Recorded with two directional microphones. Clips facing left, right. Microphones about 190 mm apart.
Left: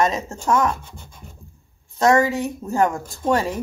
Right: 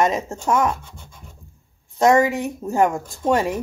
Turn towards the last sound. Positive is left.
turn(degrees=-20)  # may be behind; listen again after turning